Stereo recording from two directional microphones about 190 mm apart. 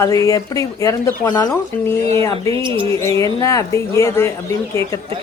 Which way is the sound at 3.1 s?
15° left (ahead or behind).